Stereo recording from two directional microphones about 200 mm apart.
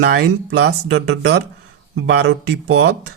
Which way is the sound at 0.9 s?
75° right (ahead or behind).